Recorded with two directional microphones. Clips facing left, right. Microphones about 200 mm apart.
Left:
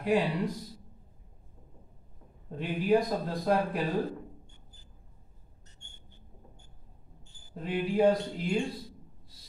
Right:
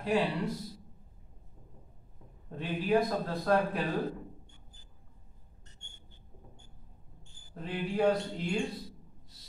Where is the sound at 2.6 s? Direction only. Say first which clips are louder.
Left 2 dB; 15° left (ahead or behind).